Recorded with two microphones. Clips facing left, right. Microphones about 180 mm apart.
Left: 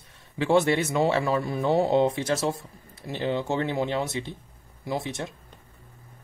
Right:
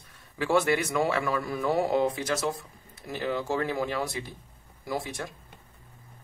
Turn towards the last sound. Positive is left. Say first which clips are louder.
# left 3 dB
turn(degrees=25)  # may be behind; listen again after turning